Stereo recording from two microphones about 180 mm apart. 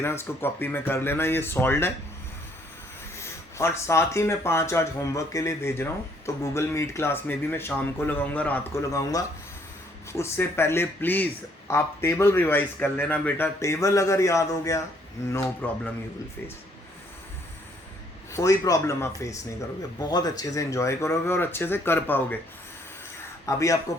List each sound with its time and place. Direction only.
0.0 s speech: 15° left (ahead or behind)
3.2 s speech: 15° left (ahead or behind)
18.3 s speech: 15° left (ahead or behind)
23.5 s speech: 20° left (ahead or behind)